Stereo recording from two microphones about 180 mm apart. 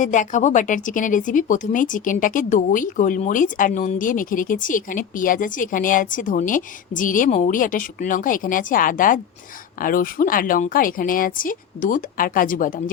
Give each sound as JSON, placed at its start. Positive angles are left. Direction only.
{"t": 0.0, "sound": "speech", "side_deg": 45}